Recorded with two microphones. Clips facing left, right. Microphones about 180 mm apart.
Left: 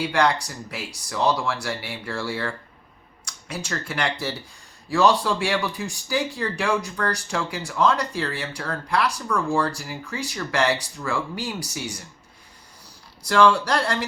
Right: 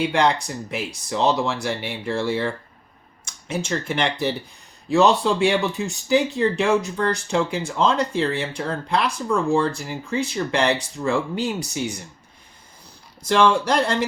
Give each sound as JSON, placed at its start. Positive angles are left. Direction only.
{"t": 0.0, "sound": "speech", "side_deg": -20}
{"t": 13.2, "sound": "speech", "side_deg": -20}